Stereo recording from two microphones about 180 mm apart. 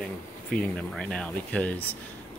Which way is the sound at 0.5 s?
5° left (ahead or behind).